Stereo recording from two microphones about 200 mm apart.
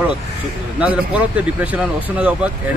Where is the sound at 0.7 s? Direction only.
5° right (ahead or behind).